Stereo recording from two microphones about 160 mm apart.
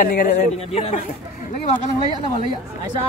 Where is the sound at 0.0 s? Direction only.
65° left (ahead or behind).